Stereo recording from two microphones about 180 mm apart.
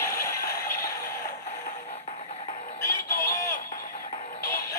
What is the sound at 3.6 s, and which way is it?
Music, 50° left (ahead or behind).